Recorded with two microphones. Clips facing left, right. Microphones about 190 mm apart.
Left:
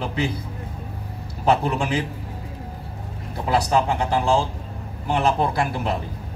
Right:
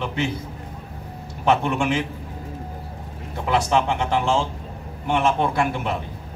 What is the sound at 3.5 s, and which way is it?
Speech, 35° left (ahead or behind).